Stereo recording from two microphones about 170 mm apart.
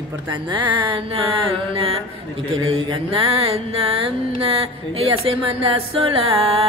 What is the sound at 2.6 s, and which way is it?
Mantra, 35° right (ahead or behind).